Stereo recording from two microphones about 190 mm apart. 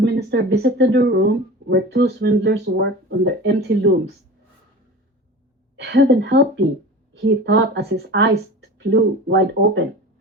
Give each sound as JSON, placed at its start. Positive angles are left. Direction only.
{"t": 0.0, "sound": "speech", "side_deg": -60}
{"t": 5.7, "sound": "speech", "side_deg": -65}